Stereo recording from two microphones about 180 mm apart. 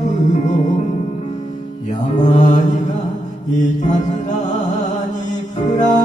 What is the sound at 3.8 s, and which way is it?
Mantra, 40° left (ahead or behind).